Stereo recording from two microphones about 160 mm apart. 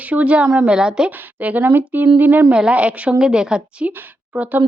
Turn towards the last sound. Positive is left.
turn(degrees=-10)  # may be behind; listen again after turning